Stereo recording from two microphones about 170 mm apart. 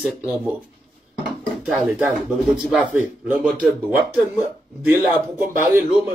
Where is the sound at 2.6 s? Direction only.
Centre (ahead or behind).